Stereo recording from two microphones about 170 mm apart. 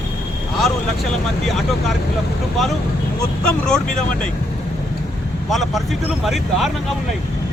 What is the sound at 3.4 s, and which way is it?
Speech, 5° left (ahead or behind).